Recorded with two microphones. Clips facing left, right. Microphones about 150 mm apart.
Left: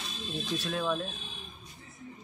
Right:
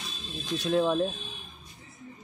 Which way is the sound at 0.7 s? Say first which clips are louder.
Right 8 dB; 30° right (ahead or behind).